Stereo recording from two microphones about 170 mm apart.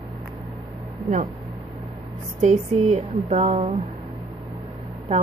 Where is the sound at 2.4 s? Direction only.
40° right (ahead or behind).